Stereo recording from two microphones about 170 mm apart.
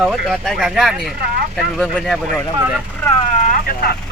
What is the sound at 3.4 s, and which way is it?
Vehicle, 60° left (ahead or behind).